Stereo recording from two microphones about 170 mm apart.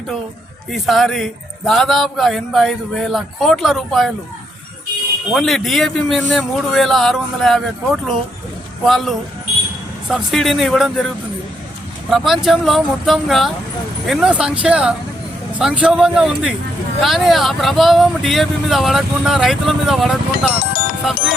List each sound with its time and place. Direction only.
0.7 s speech: centre (ahead or behind)
5.3 s speech: 5° left (ahead or behind)
8.8 s speech: centre (ahead or behind)
12.1 s speech: centre (ahead or behind)
20.6 s music: 60° left (ahead or behind)